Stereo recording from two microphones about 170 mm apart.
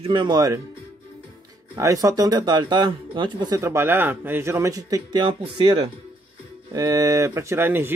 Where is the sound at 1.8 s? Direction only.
20° right (ahead or behind).